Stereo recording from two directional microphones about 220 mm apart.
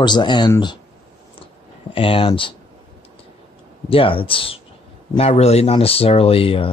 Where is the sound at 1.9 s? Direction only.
25° left (ahead or behind).